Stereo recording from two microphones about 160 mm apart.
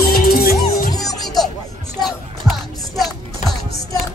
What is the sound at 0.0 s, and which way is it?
Music, 70° left (ahead or behind).